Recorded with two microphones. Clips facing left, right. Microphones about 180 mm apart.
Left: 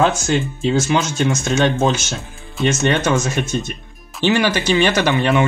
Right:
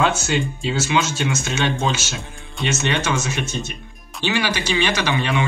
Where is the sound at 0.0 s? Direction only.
40° left (ahead or behind).